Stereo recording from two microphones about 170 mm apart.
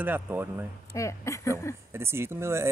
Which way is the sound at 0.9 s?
15° left (ahead or behind).